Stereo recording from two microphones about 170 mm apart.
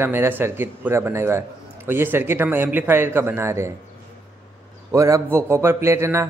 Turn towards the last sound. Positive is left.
turn(degrees=-15)  # may be behind; listen again after turning